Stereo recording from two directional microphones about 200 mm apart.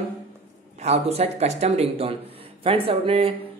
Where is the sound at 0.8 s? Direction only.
30° right (ahead or behind).